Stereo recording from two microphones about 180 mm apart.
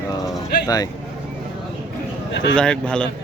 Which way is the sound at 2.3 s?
75° left (ahead or behind).